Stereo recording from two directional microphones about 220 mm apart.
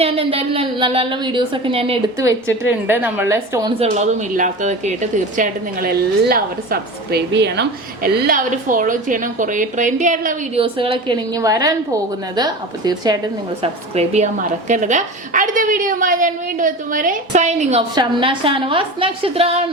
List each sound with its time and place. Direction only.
0.0 s a woman's voice: 25° right (ahead or behind)
2.1 s a woman's voice: 10° right (ahead or behind)
3.8 s a woman's voice: 30° right (ahead or behind)
13.6 s a woman's voice: 30° right (ahead or behind)